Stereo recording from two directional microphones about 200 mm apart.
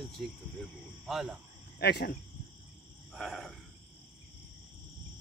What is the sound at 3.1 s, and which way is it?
Cricket, centre (ahead or behind).